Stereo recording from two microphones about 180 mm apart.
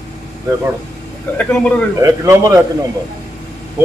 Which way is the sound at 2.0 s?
20° right (ahead or behind).